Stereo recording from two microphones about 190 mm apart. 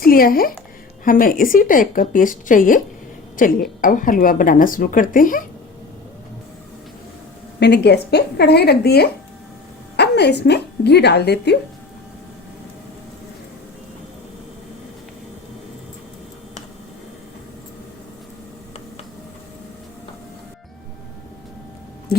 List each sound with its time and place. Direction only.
0.0 s speech: 50° left (ahead or behind)
7.6 s a woman's voice: 60° left (ahead or behind)